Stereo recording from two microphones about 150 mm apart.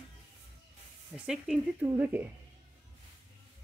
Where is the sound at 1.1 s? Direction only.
5° right (ahead or behind).